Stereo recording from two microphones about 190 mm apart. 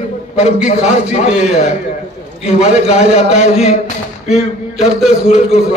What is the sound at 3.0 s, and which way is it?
Speech, 35° left (ahead or behind).